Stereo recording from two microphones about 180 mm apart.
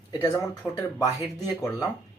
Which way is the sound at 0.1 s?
20° left (ahead or behind).